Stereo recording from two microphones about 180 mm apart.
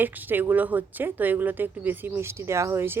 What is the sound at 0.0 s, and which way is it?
Speech, 10° right (ahead or behind).